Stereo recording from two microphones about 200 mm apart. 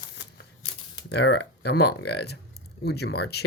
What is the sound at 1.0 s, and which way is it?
Speech, 55° left (ahead or behind).